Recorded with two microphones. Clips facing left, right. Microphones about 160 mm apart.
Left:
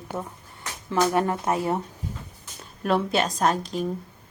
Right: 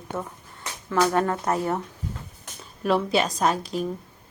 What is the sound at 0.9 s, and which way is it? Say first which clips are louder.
Speech: even; 15° left (ahead or behind).